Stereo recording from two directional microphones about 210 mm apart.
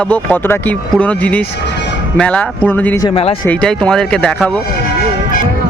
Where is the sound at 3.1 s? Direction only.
30° left (ahead or behind).